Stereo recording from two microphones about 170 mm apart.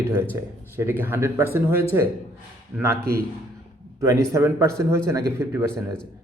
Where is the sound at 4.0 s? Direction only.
15° right (ahead or behind).